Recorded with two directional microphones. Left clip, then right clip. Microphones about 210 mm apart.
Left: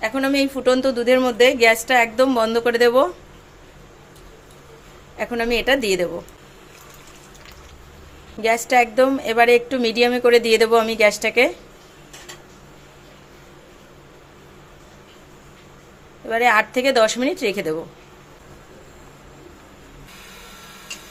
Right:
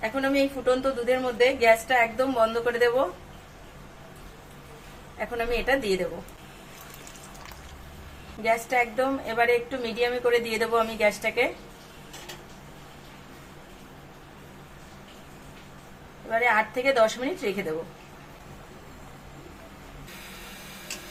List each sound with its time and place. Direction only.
0.0 s a woman's voice: 50° left (ahead or behind)
5.1 s a woman's voice: 45° left (ahead or behind)
8.4 s a woman's voice: 50° left (ahead or behind)
16.3 s a woman's voice: 50° left (ahead or behind)